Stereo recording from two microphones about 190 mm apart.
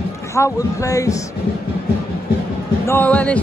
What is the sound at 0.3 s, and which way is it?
Speech, 15° left (ahead or behind).